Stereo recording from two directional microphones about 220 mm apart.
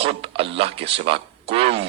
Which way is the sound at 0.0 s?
25° right (ahead or behind).